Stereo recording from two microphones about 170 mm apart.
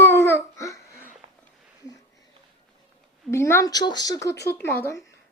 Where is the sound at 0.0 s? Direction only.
15° left (ahead or behind).